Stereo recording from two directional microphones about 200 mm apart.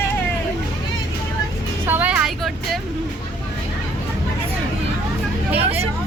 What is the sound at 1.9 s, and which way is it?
Vehicle, 5° right (ahead or behind).